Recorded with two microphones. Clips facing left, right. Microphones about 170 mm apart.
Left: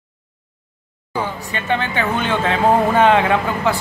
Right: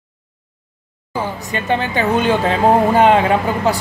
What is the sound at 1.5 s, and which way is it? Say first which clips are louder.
Speech: right 4 dB; 40° right (ahead or behind).